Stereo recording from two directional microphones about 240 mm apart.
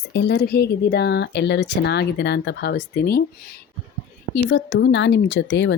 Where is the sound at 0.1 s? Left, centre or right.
Left.